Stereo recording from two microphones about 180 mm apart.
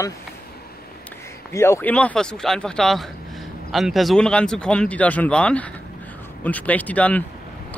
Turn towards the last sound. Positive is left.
turn(degrees=10)  # may be behind; listen again after turning